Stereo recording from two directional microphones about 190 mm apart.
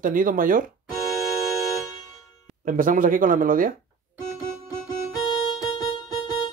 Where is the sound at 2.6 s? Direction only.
45° right (ahead or behind).